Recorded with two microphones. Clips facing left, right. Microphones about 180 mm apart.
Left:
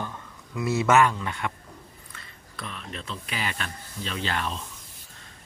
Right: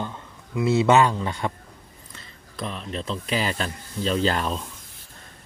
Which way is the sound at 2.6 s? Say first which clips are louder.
Right 7 dB; 35° right (ahead or behind).